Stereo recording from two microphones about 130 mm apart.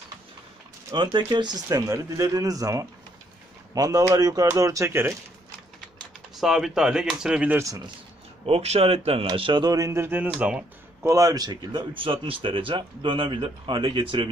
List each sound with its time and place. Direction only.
0.9 s speech: 35° right (ahead or behind); by 5.1 s 20° right (ahead or behind)
6.3 s speech: 5° right (ahead or behind)
7.5 s speech: 25° right (ahead or behind)
8.5 s speech: 50° right (ahead or behind); by 11.1 s 10° right (ahead or behind)
11.1 s speech: 25° right (ahead or behind)